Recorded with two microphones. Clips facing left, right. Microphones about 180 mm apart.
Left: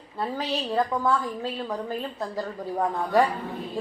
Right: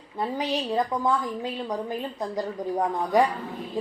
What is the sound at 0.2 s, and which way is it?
A woman's voice, 15° right (ahead or behind).